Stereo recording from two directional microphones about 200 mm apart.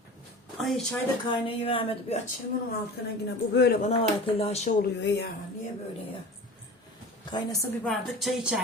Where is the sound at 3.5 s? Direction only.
60° left (ahead or behind).